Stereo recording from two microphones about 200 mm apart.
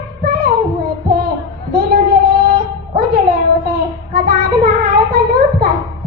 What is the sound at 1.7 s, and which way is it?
Child singing, 50° right (ahead or behind).